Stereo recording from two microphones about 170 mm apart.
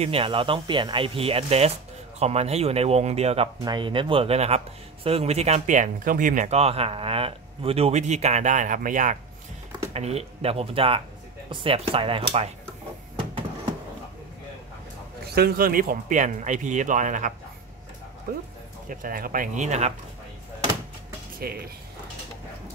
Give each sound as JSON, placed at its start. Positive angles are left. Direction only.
{"t": 0.0, "sound": "speech", "side_deg": -35}
{"t": 3.6, "sound": "speech", "side_deg": -30}
{"t": 9.9, "sound": "speech", "side_deg": -40}
{"t": 15.2, "sound": "speech", "side_deg": -65}
{"t": 18.3, "sound": "speech", "side_deg": -60}
{"t": 21.4, "sound": "speech", "side_deg": -65}